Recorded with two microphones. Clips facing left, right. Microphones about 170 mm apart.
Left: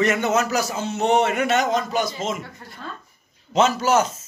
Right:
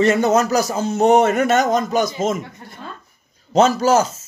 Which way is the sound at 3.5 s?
40° right (ahead or behind).